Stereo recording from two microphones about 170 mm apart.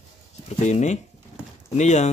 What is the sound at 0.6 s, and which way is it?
Speech, 45° left (ahead or behind).